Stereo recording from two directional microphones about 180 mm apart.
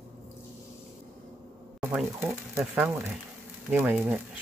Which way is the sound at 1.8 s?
10° right (ahead or behind).